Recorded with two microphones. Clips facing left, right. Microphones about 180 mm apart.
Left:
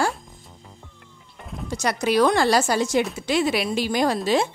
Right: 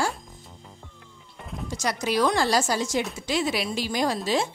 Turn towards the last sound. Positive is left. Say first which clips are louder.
# left 4 dB
turn(degrees=60)  # may be behind; listen again after turning